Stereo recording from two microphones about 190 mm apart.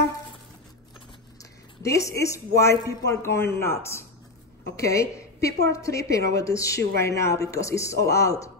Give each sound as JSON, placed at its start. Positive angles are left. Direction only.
{"t": 1.4, "sound": "a woman's voice", "side_deg": 15}